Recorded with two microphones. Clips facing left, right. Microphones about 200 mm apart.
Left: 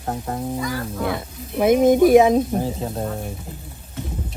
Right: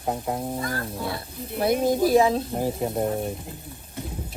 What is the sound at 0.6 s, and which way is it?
Speech, 90° left.